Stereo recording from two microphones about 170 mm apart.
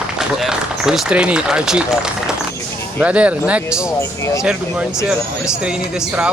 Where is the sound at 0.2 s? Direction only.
Centre (ahead or behind).